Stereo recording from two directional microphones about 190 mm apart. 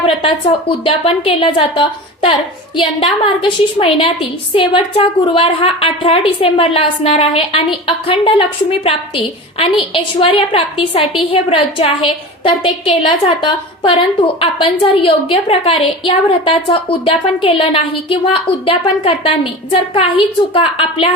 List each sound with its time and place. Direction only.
0.0 s a woman's voice: 30° left (ahead or behind)
9.6 s a woman's voice: 30° left (ahead or behind)